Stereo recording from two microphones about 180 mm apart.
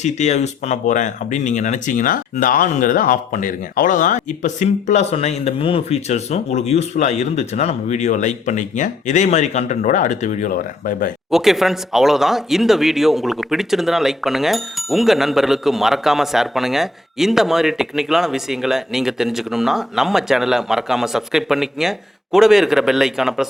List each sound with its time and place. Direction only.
0.0 s speech: 40° left (ahead or behind)
11.3 s speech: centre (ahead or behind)